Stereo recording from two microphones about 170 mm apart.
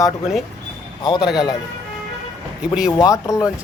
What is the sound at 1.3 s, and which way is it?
Speech, 5° right (ahead or behind).